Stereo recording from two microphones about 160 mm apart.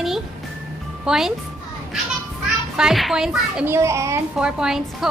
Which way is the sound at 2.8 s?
Centre (ahead or behind).